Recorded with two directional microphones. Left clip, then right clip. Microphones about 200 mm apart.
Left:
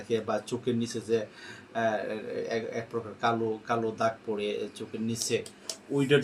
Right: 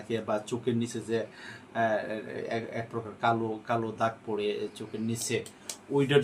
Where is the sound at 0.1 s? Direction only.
15° right (ahead or behind).